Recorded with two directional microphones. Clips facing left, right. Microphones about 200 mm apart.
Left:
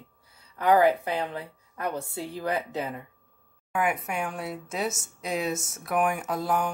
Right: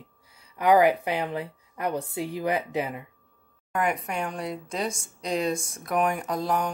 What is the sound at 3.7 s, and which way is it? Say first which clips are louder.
A woman's voice: even; 5° left (ahead or behind).